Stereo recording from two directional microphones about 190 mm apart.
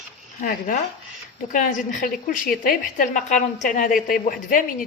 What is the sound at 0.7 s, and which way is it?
A woman's voice, 45° left (ahead or behind).